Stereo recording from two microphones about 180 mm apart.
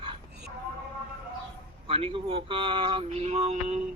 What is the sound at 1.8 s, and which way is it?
Speech, 30° right (ahead or behind).